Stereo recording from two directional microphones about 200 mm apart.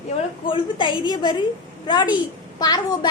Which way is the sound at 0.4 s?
25° left (ahead or behind).